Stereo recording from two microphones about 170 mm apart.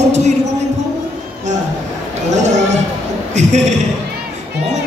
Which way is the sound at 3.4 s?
45° right (ahead or behind).